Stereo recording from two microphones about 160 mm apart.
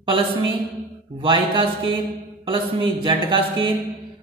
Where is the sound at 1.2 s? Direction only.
35° right (ahead or behind).